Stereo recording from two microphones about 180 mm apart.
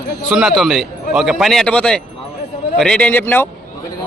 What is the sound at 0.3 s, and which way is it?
A man's voice, 5° right (ahead or behind).